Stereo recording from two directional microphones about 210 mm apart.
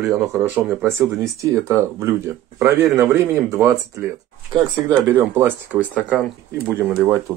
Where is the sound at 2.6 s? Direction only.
10° right (ahead or behind).